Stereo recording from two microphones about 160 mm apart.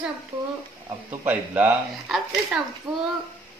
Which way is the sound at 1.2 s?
10° right (ahead or behind).